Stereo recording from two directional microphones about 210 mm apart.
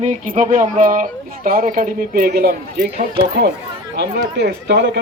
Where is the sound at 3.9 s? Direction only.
55° right (ahead or behind).